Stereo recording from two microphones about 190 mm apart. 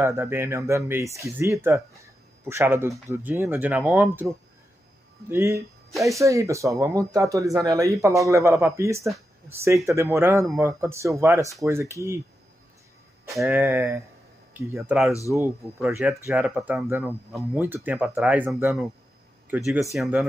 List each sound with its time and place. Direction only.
0.0 s speech: 15° right (ahead or behind)
5.3 s speech: 15° right (ahead or behind)
13.4 s speech: 10° right (ahead or behind)
14.5 s a sound: 15° right (ahead or behind)
14.8 s speech: centre (ahead or behind)